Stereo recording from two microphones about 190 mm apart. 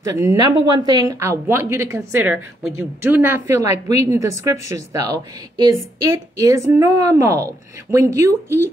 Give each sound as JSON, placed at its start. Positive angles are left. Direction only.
{"t": 0.0, "sound": "a woman's voice", "side_deg": -15}